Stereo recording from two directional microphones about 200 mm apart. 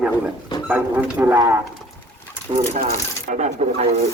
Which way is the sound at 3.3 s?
35° right (ahead or behind).